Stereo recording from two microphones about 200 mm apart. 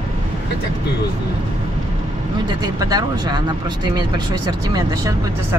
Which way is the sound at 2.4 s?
20° right (ahead or behind).